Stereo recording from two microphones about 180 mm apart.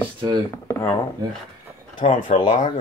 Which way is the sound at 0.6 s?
15° left (ahead or behind).